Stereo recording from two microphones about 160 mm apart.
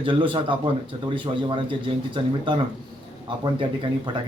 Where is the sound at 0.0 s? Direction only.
30° right (ahead or behind).